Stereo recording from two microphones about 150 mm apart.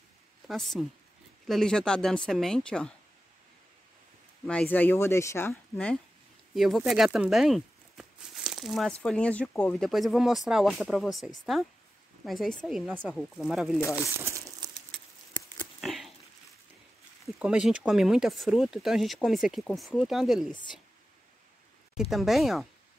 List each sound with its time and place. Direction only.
0.5 s speech: centre (ahead or behind)
4.5 s speech: 10° left (ahead or behind)
6.5 s speech: centre (ahead or behind)
15.8 s a sound: centre (ahead or behind)
17.2 s speech: 5° right (ahead or behind)
22.1 s speech: centre (ahead or behind)